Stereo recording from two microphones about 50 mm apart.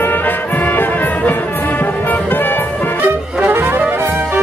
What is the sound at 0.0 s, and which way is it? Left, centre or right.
Music, left.